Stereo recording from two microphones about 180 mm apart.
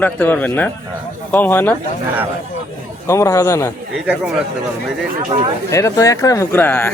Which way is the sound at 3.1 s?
15° left (ahead or behind).